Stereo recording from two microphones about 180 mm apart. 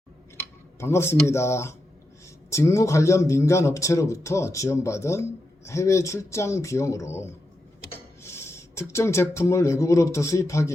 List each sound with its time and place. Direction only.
0.8 s a man's voice: 15° left (ahead or behind)
8.2 s a sound: 15° left (ahead or behind)
9.3 s a man's voice: 15° left (ahead or behind)